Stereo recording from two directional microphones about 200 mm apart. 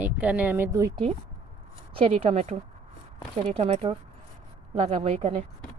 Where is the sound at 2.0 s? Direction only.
30° right (ahead or behind).